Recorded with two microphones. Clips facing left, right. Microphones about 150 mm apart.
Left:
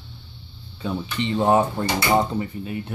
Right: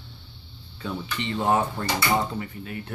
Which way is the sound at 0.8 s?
25° left (ahead or behind).